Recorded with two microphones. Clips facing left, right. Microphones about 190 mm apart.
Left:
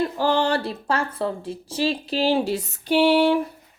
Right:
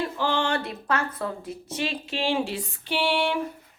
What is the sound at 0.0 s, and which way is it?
A woman's voice, 40° left (ahead or behind).